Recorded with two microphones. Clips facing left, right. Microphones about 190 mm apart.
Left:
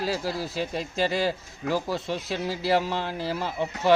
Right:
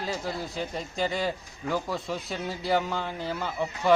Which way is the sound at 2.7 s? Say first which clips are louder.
Left 1 dB; 30° left (ahead or behind).